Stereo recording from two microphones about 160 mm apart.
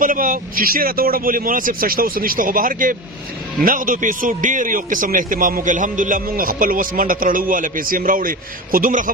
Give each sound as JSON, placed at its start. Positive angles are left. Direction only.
{"t": 0.0, "sound": "a man's voice", "side_deg": -55}